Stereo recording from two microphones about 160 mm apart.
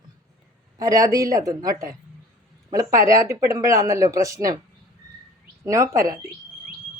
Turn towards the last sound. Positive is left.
turn(degrees=-20)  # may be behind; listen again after turning